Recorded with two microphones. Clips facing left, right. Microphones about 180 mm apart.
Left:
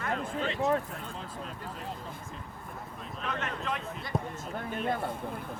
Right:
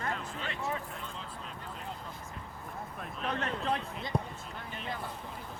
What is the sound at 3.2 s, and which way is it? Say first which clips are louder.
Speech: right 2 dB; 35° right (ahead or behind).